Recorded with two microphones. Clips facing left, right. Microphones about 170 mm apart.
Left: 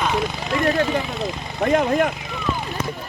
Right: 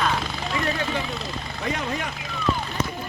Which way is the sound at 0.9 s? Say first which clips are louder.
Left 5 dB; 20° left (ahead or behind).